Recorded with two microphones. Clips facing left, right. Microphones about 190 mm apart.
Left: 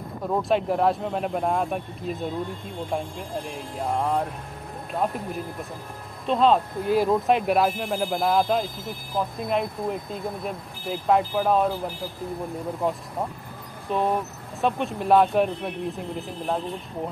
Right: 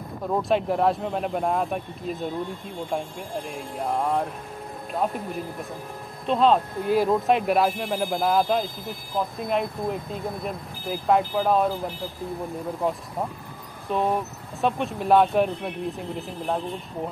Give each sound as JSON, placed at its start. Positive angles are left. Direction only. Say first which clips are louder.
{"t": 0.3, "sound": "speech", "louder": "even", "side_deg": 0}
{"t": 12.8, "sound": "speech", "louder": "even", "side_deg": 0}